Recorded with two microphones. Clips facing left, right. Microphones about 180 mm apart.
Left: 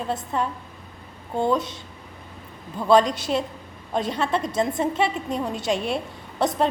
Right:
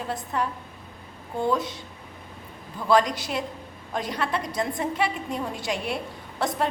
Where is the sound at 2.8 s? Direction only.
25° left (ahead or behind).